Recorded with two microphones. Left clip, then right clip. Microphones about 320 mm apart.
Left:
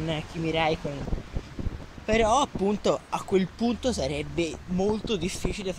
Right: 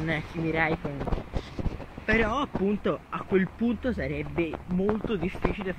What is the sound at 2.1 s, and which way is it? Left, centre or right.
Speech, centre.